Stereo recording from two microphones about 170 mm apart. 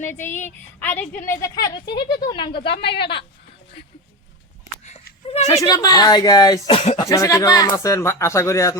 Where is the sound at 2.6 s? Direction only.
85° left.